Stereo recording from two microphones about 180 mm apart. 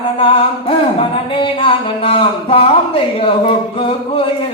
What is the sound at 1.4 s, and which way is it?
Speech, 30° left (ahead or behind).